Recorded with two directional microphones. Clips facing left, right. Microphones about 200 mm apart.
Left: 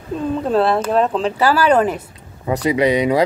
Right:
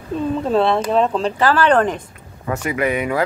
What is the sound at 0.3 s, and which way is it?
Speech, centre (ahead or behind).